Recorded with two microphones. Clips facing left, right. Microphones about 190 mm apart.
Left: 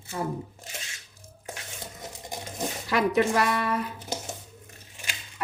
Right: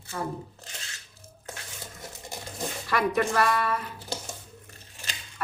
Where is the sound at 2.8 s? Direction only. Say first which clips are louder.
Left 2 dB; 20° left (ahead or behind).